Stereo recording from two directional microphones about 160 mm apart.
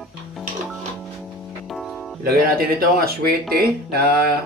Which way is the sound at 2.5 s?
70° right (ahead or behind).